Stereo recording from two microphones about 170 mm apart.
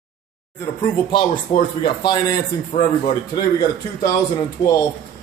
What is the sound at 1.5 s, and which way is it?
Speech, 50° left (ahead or behind).